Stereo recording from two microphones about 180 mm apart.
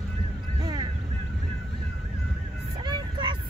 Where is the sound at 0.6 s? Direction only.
20° right (ahead or behind).